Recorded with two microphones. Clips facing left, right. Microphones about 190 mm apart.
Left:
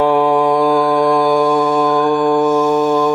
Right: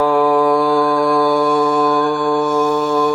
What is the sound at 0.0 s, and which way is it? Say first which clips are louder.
Mantra: left 1 dB; 20° left (ahead or behind).